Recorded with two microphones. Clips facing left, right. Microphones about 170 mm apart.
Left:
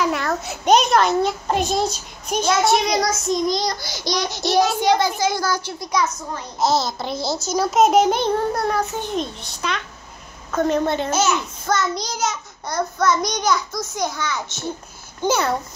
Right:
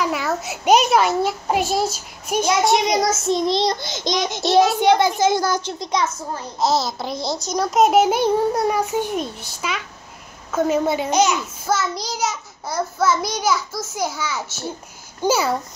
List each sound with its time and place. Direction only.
0.0 s a child's voice: 5° right (ahead or behind); by 6.4 s 25° right (ahead or behind)
6.6 s a child's voice: centre (ahead or behind)